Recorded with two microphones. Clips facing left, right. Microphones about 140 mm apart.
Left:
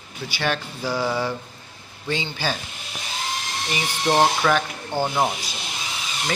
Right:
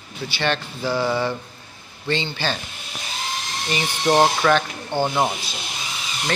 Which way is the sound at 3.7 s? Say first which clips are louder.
Right 3 dB; 5° left (ahead or behind).